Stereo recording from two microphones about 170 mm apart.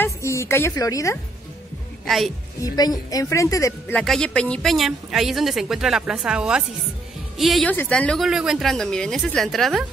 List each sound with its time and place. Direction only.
0.0 s a woman's voice: 15° left (ahead or behind)
2.0 s a woman's voice: centre (ahead or behind)
2.6 s a woman's voice: 20° left (ahead or behind)
3.9 s a woman's voice: 5° left (ahead or behind)
7.7 s a woman's voice: 10° left (ahead or behind)